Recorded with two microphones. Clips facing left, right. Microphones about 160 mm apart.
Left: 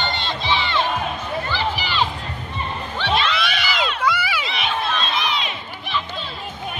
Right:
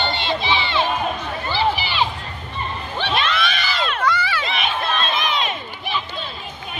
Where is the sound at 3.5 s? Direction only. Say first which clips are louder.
Even; 10° left (ahead or behind).